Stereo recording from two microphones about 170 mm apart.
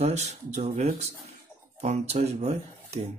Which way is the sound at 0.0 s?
40° right (ahead or behind).